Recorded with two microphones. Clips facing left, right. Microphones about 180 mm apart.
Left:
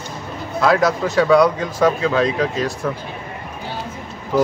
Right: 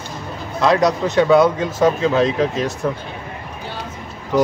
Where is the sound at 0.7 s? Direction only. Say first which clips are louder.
Right 1 dB; 20° right (ahead or behind).